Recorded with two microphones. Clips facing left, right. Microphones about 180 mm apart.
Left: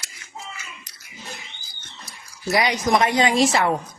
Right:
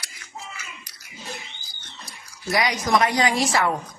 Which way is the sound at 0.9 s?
25° left (ahead or behind).